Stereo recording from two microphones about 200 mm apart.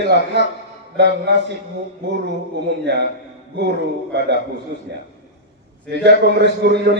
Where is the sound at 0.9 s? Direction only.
60° right (ahead or behind).